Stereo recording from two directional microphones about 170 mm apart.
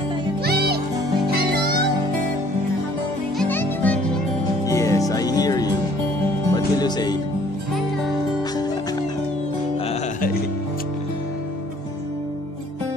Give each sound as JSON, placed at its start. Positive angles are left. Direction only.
{"t": 0.4, "sound": "music", "side_deg": -70}
{"t": 3.3, "sound": "music", "side_deg": 10}